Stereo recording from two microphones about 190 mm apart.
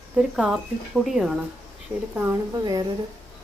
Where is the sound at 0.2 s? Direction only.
5° right (ahead or behind).